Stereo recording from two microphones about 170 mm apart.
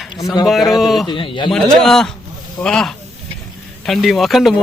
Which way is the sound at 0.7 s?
Centre (ahead or behind).